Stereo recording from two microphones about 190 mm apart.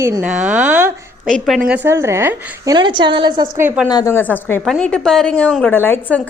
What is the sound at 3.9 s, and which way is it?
Speech, 20° left (ahead or behind).